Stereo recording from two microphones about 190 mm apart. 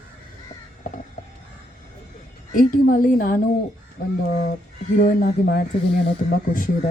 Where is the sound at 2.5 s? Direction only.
45° left (ahead or behind).